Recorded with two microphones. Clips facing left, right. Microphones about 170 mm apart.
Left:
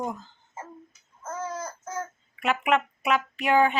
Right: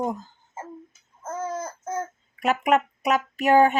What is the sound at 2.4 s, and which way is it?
Speech, 40° right (ahead or behind).